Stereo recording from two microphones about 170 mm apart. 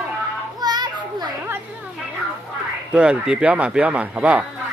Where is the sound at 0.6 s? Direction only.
25° right (ahead or behind).